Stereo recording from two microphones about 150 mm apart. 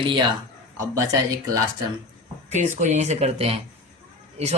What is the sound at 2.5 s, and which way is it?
A man's voice, 50° right (ahead or behind).